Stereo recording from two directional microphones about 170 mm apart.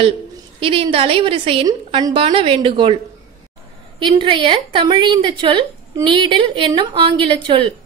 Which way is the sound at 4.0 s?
30° right (ahead or behind).